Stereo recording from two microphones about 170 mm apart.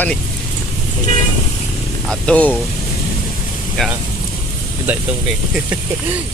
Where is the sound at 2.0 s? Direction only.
5° left (ahead or behind).